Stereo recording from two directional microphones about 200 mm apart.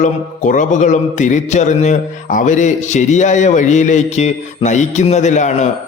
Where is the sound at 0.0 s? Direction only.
40° left (ahead or behind).